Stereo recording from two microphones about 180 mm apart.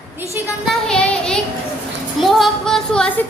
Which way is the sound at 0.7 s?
5° left (ahead or behind).